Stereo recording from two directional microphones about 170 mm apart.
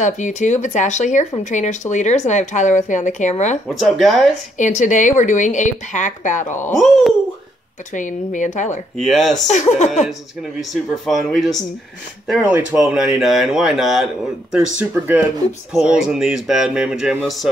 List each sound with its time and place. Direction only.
0.0 s speech: 45° left (ahead or behind)
3.6 s speech: centre (ahead or behind)
4.6 s speech: 45° left (ahead or behind)
6.8 s speech: centre (ahead or behind)
7.9 s speech: 50° left (ahead or behind)
8.9 s speech: centre (ahead or behind)
9.5 s speech: 45° left (ahead or behind)
10.6 s speech: centre (ahead or behind)